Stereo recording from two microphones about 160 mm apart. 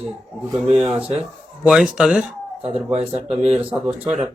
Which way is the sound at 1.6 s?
5° right (ahead or behind).